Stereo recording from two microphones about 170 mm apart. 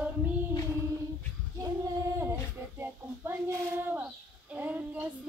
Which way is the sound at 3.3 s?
15° right (ahead or behind).